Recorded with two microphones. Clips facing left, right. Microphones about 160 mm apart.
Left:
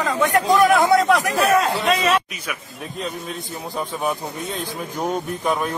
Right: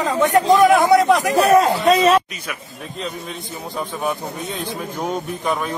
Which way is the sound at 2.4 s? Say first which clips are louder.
Even; 5° left (ahead or behind).